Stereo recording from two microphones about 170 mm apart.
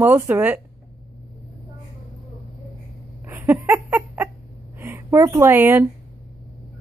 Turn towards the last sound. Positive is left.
turn(degrees=-10)  # may be behind; listen again after turning